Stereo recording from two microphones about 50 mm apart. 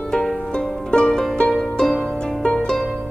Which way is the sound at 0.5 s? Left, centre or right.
Centre.